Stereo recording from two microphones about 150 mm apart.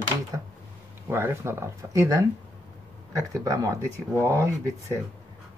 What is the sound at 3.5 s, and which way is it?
Speech, 20° right (ahead or behind).